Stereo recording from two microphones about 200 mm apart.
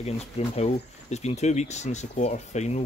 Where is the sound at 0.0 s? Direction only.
30° left (ahead or behind).